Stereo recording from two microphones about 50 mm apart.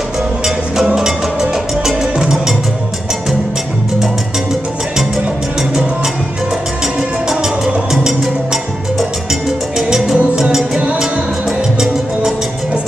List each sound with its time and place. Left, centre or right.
0.7 s music: centre
7.2 s music: centre
9.3 s music: centre